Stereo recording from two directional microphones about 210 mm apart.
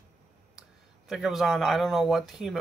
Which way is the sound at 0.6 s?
Centre (ahead or behind).